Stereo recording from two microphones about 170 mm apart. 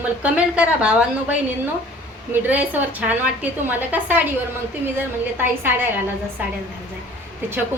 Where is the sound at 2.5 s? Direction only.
10° right (ahead or behind).